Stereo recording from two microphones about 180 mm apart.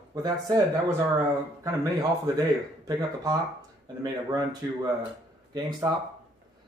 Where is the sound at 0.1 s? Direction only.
20° right (ahead or behind).